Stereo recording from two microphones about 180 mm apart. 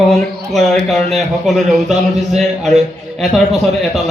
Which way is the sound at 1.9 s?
40° right (ahead or behind).